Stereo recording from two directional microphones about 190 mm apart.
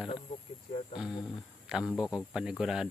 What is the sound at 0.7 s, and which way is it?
Speech, 30° left (ahead or behind).